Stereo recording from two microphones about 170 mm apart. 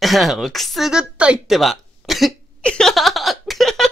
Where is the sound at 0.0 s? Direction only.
Centre (ahead or behind).